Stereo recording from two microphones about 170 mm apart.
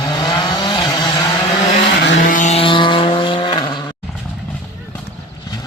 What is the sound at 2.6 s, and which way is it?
Vehicle, 30° left (ahead or behind).